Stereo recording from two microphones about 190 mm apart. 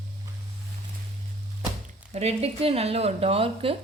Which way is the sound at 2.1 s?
35° right (ahead or behind).